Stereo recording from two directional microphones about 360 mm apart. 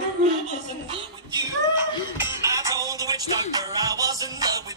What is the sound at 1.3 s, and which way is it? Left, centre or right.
Music, centre.